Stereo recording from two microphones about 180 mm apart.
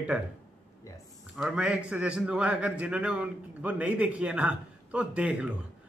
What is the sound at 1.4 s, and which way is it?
A man's voice, 5° right (ahead or behind).